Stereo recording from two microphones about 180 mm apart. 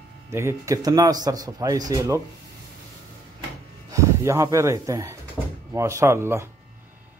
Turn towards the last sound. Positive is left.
turn(degrees=-15)  # may be behind; listen again after turning